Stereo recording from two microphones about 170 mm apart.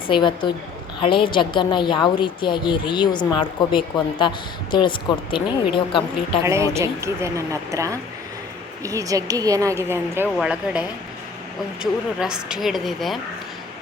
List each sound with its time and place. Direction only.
0.1 s a woman's voice: 25° left (ahead or behind)
6.4 s speech: 15° right (ahead or behind); by 13.1 s centre (ahead or behind)